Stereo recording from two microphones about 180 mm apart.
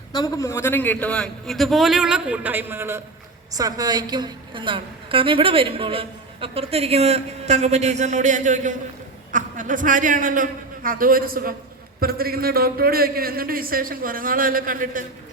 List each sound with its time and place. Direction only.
0.1 s a man's voice: 20° left (ahead or behind); by 15.0 s 50° right (ahead or behind)